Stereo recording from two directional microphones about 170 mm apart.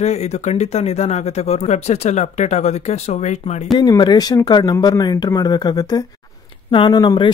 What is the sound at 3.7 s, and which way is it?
Speech, 25° left (ahead or behind).